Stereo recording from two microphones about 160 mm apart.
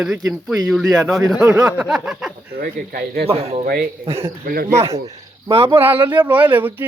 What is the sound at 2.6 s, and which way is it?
Speech, 70° right (ahead or behind).